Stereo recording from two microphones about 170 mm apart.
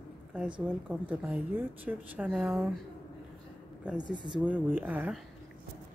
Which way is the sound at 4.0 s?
30° left (ahead or behind).